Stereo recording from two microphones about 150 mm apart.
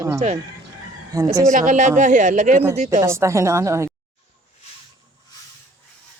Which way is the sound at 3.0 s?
20° right (ahead or behind).